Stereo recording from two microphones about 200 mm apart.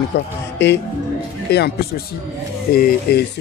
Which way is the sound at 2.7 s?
50° left (ahead or behind).